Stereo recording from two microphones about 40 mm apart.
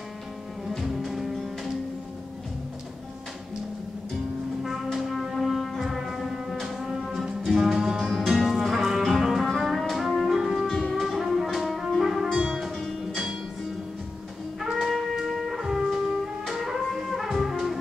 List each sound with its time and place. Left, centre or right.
0.7 s music: centre
1.3 s music: centre
4.9 s music: centre
8.0 s music: centre
8.5 s music: centre
12.3 s music: right
12.5 s music: centre
14.6 s music: centre